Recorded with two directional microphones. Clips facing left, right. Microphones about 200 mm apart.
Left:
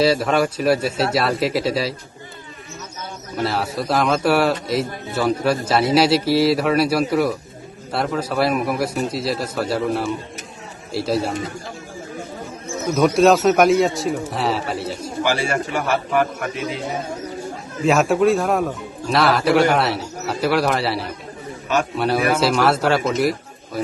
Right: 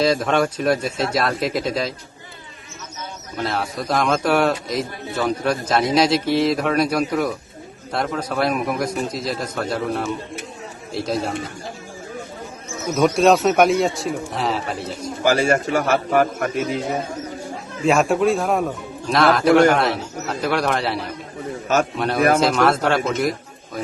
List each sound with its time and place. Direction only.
0.0 s a man's voice: 5° left (ahead or behind)
3.3 s a man's voice: centre (ahead or behind)
12.9 s speech: centre (ahead or behind)
15.2 s a man's voice: 45° right (ahead or behind)
17.8 s speech: centre (ahead or behind)